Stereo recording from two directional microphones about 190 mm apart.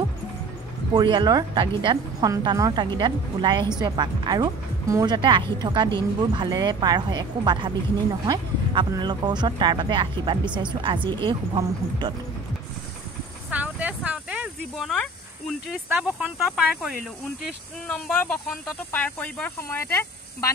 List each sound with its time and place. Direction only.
0.9 s speech: 25° right (ahead or behind)
13.5 s snake: 10° right (ahead or behind)
16.0 s speech: 5° right (ahead or behind); by 20.4 s 10° left (ahead or behind)